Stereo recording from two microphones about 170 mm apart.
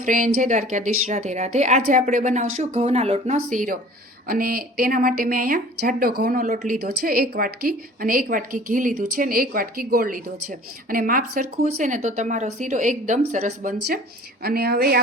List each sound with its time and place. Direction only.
0.0 s a woman's voice: 50° right (ahead or behind)
6.8 s a woman's voice: 60° right (ahead or behind)
14.4 s a woman's voice: 65° right (ahead or behind)